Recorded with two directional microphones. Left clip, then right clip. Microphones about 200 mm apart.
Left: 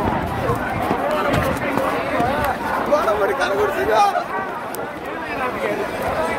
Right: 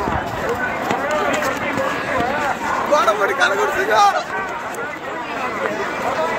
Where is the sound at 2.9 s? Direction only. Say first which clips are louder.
Right 2 dB; 20° right (ahead or behind).